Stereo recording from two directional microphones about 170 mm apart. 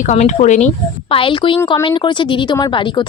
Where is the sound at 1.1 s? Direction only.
30° left (ahead or behind).